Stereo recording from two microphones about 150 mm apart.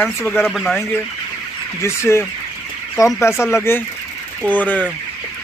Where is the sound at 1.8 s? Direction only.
15° left (ahead or behind).